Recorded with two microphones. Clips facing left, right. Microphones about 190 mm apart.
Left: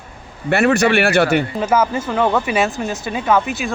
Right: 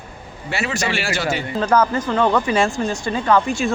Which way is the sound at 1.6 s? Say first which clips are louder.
Even; 5° left (ahead or behind).